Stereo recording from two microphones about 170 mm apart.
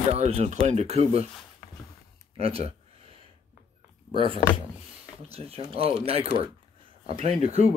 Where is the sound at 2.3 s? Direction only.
35° right (ahead or behind).